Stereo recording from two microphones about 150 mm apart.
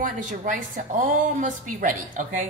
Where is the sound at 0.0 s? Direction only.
60° right (ahead or behind).